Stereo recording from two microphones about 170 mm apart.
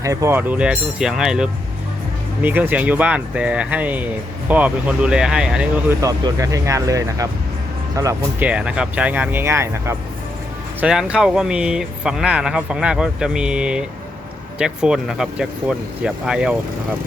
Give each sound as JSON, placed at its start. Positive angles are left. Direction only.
{"t": 0.0, "sound": "speech", "side_deg": -20}
{"t": 6.0, "sound": "speech", "side_deg": -20}
{"t": 8.4, "sound": "speech", "side_deg": -5}
{"t": 10.8, "sound": "speech", "side_deg": -5}